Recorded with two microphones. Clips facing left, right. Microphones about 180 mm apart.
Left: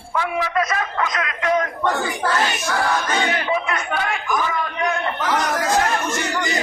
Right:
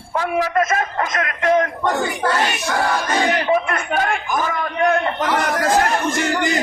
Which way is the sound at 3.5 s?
45° right (ahead or behind).